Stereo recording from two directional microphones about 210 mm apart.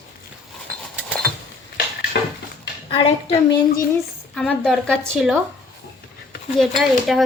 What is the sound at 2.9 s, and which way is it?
Speech, 30° left (ahead or behind).